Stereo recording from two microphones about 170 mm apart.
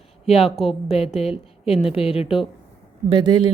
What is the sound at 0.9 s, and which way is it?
A woman's voice, 35° left (ahead or behind).